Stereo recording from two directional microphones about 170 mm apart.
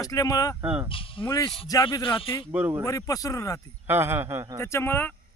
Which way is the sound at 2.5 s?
10° right (ahead or behind).